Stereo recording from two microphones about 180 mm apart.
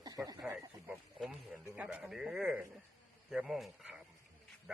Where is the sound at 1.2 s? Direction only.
5° right (ahead or behind).